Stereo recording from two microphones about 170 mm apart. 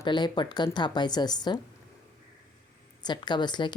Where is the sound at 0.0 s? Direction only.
25° left (ahead or behind).